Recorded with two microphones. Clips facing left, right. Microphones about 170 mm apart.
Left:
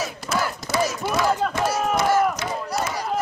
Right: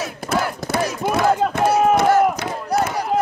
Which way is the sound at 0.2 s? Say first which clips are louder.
Right 7 dB; 55° right (ahead or behind).